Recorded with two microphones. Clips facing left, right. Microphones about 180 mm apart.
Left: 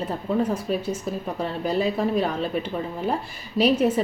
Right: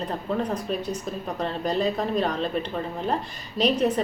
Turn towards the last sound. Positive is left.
turn(degrees=5)  # may be behind; listen again after turning